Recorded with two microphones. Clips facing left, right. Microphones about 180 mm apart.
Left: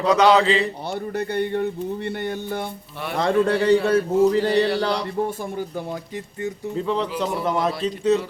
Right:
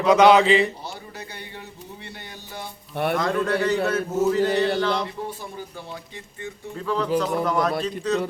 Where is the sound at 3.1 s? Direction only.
30° left (ahead or behind); by 5.9 s 45° left (ahead or behind).